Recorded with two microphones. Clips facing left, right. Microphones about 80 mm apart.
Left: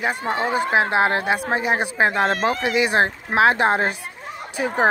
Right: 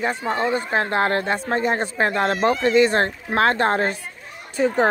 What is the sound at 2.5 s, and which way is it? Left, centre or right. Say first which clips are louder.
A woman's voice: right 3 dB; centre.